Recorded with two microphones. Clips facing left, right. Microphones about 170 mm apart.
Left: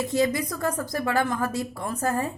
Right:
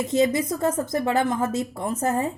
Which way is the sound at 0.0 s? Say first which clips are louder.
Right 3 dB; 20° right (ahead or behind).